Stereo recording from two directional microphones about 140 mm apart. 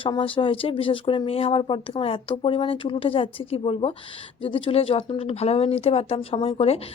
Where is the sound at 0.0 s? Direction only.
40° left (ahead or behind).